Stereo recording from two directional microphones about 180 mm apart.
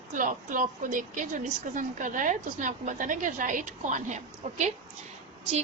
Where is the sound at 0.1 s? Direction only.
45° right (ahead or behind).